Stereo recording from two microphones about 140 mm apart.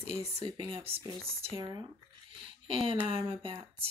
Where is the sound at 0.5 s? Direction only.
40° right (ahead or behind).